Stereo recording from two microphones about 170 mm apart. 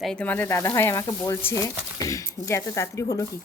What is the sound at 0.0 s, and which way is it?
Speech, 5° left (ahead or behind).